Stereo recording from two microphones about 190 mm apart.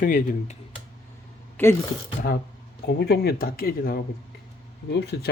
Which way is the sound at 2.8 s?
60° left (ahead or behind).